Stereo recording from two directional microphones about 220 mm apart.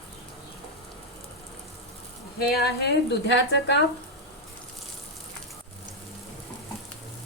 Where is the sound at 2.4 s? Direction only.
45° left (ahead or behind).